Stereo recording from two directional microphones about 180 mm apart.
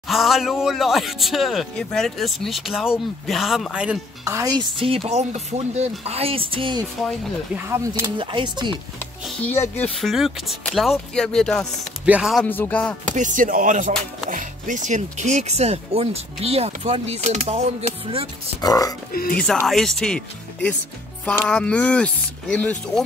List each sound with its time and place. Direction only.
0.1 s speech: centre (ahead or behind)
4.2 s speech: 15° right (ahead or behind)
7.5 s speech: 15° right (ahead or behind)
8.2 s speech: 25° right (ahead or behind)
9.5 s speech: 10° left (ahead or behind)
12.4 s speech: 10° left (ahead or behind)
13.1 s speech: 45° right (ahead or behind)
18.6 s speech: 20° left (ahead or behind)
19.3 s speech: 5° left (ahead or behind)